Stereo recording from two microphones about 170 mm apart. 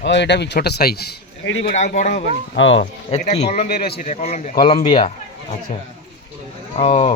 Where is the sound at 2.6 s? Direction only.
90° left.